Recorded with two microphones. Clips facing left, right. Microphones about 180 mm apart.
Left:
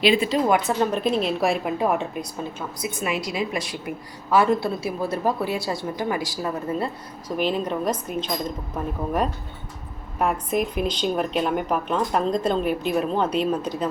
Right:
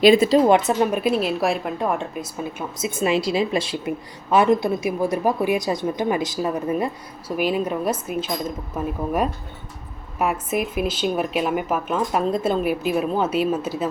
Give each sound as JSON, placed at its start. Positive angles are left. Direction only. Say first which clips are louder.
{"t": 0.0, "sound": "speech", "louder": "right 6 dB", "side_deg": -40}
{"t": 0.4, "sound": "speech", "louder": "right 4 dB", "side_deg": -25}
{"t": 0.8, "sound": "speech", "louder": "right 2 dB", "side_deg": -10}
{"t": 2.7, "sound": "a woman's voice", "louder": "right 7 dB", "side_deg": -25}